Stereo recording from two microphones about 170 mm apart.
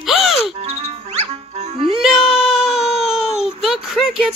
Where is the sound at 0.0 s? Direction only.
Centre (ahead or behind).